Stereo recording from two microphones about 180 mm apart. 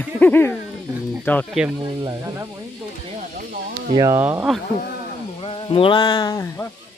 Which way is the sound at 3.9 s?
20° right (ahead or behind).